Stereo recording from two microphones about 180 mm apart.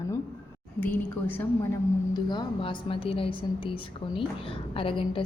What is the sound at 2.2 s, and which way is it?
A woman's voice, 25° left (ahead or behind).